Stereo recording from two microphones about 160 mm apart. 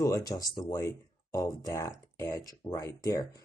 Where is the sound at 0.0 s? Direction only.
20° left (ahead or behind).